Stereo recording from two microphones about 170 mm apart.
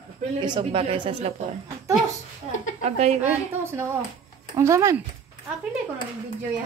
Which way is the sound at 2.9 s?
40° right (ahead or behind).